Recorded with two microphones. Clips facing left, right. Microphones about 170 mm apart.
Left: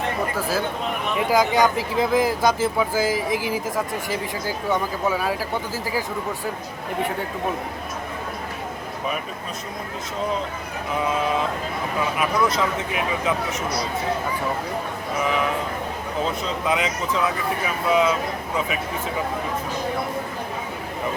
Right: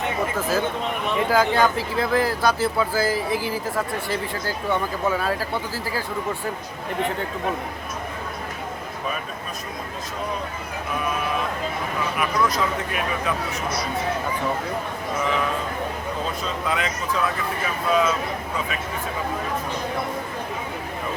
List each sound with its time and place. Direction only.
0.3 s speech: 10° left (ahead or behind)
12.1 s speech: 20° left (ahead or behind)
15.2 s speech: 20° left (ahead or behind)